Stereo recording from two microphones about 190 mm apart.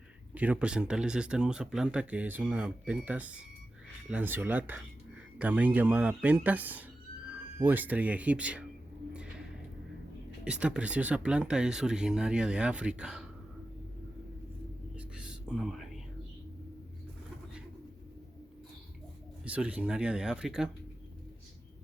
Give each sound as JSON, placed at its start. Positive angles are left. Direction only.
{"t": 0.3, "sound": "speech", "side_deg": -10}
{"t": 10.4, "sound": "speech", "side_deg": -5}
{"t": 14.9, "sound": "whispering", "side_deg": -5}
{"t": 19.5, "sound": "speech", "side_deg": -5}